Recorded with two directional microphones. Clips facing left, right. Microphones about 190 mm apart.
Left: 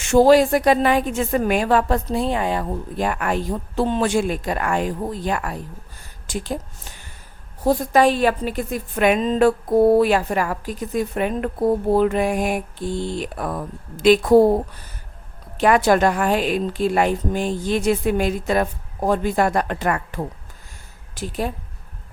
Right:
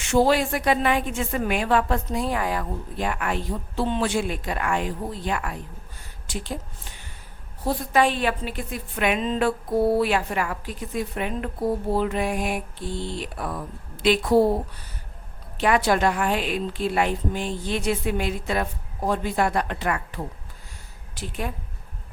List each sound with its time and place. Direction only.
0.0 s a woman's voice: 45° left (ahead or behind); by 2.6 s 25° left (ahead or behind)
3.0 s a woman's voice: 45° left (ahead or behind)
15.5 s a woman's voice: 45° left (ahead or behind)
21.2 s a woman's voice: 35° left (ahead or behind)